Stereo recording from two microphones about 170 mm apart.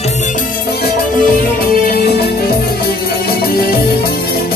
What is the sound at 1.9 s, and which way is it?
Music, 70° left (ahead or behind).